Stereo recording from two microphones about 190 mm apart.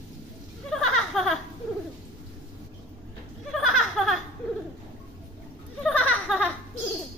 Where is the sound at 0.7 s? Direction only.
5° left (ahead or behind).